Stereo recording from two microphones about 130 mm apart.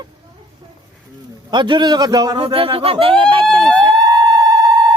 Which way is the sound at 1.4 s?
35° right (ahead or behind).